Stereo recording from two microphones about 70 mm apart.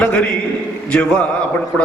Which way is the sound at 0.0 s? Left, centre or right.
Centre.